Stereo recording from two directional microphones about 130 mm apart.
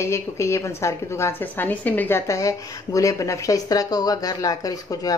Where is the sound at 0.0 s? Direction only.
20° left (ahead or behind).